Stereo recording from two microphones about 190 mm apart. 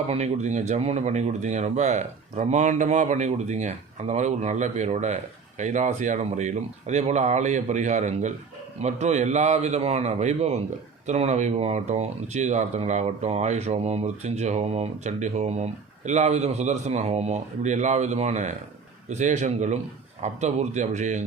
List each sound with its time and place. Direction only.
0.1 s speech: 35° right (ahead or behind)